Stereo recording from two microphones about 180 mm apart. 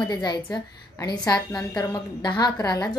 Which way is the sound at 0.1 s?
20° left (ahead or behind).